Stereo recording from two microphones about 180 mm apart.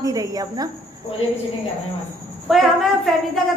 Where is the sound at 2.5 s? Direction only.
Centre (ahead or behind).